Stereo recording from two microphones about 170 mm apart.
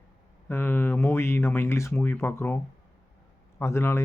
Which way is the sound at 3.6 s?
15° left (ahead or behind).